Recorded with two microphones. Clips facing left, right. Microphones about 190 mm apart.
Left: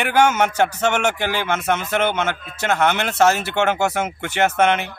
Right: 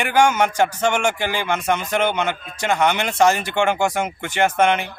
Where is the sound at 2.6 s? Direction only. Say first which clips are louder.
Even; 5° left (ahead or behind).